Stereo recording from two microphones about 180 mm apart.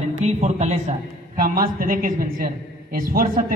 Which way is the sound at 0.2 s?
40° right (ahead or behind).